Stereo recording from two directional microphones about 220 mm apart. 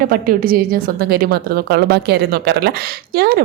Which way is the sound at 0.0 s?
40° right (ahead or behind).